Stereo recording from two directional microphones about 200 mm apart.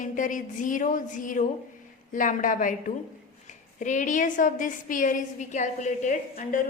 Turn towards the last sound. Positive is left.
turn(degrees=40)  # may be behind; listen again after turning